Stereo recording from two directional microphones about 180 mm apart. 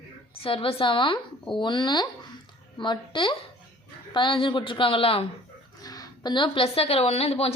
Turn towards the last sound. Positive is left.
turn(degrees=35)  # may be behind; listen again after turning